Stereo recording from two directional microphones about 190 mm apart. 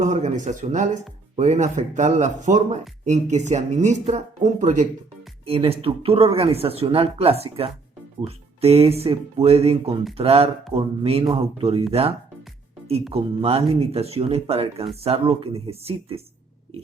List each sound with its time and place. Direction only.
0.0 s speech: 40° right (ahead or behind)